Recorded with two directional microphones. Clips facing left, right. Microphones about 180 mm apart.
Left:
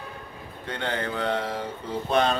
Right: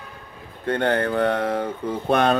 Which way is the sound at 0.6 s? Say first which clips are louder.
Right 9 dB; 55° right (ahead or behind).